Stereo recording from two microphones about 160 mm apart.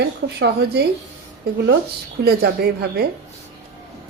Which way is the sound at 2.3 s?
80° right.